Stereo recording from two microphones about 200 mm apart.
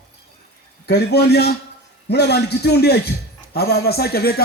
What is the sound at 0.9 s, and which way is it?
A man's voice, 55° left (ahead or behind).